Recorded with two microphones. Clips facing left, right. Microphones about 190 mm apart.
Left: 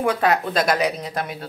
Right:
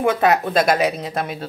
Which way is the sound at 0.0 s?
20° right (ahead or behind).